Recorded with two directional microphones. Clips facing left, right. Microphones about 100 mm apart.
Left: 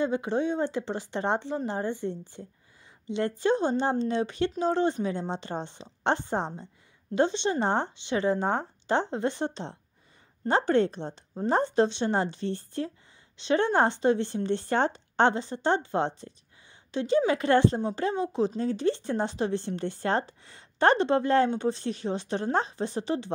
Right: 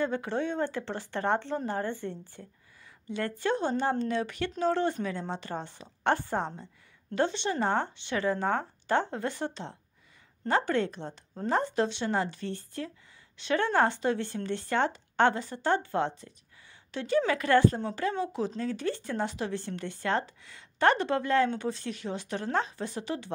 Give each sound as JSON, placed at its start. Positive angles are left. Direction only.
{"t": 0.0, "sound": "speech", "side_deg": 20}